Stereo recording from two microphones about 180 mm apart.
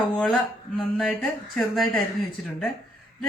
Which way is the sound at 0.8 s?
Centre (ahead or behind).